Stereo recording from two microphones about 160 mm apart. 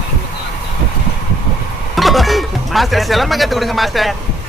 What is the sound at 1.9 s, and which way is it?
Speech, centre (ahead or behind).